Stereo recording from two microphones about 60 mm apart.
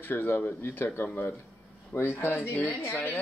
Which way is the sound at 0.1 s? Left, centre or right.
Left.